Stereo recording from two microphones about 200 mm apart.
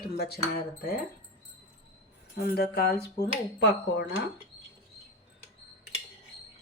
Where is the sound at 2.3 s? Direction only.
55° left (ahead or behind).